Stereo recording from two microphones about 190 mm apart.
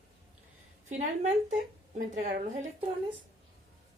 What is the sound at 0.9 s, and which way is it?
A woman's voice, 40° right (ahead or behind).